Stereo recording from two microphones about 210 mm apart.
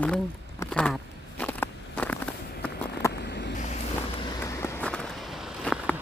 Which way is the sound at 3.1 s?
50° left (ahead or behind).